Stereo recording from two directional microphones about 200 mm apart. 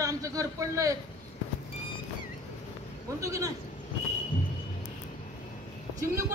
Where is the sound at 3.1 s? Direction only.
15° right (ahead or behind).